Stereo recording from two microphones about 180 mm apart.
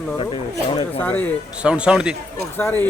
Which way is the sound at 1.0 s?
10° left (ahead or behind).